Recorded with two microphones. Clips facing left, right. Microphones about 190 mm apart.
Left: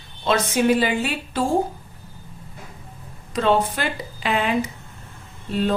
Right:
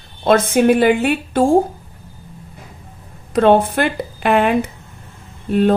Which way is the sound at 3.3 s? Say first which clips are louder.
Right 7 dB; 55° right (ahead or behind).